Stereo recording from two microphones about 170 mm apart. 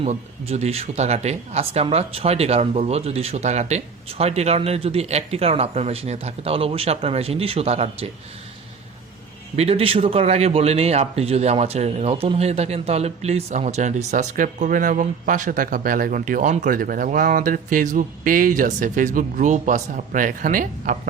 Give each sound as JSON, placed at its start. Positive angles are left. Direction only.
{"t": 0.0, "sound": "speech", "side_deg": -40}
{"t": 9.6, "sound": "speech", "side_deg": -35}